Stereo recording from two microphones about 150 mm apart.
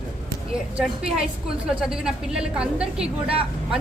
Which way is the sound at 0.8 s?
5° right (ahead or behind).